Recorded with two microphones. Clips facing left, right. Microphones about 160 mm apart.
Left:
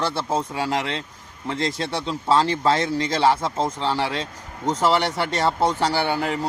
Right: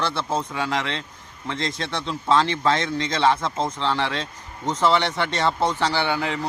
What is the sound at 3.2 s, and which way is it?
Speech, 5° left (ahead or behind).